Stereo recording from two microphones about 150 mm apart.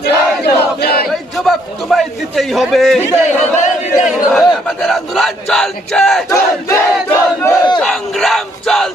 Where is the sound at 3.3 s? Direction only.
50° left (ahead or behind).